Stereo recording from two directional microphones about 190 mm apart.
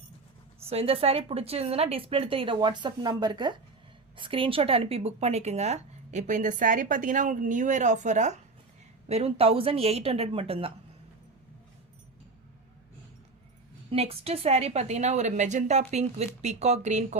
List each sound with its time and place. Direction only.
0.7 s a woman's voice: 30° right (ahead or behind)
13.9 s speech: 30° right (ahead or behind)